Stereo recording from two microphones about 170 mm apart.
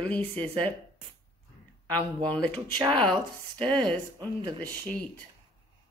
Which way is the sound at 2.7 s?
25° right (ahead or behind).